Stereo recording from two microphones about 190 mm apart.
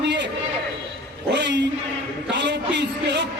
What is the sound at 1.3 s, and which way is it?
A man's voice, 65° right (ahead or behind).